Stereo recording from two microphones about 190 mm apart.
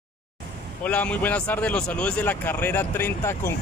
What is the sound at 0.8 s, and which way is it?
Speech, 5° left (ahead or behind).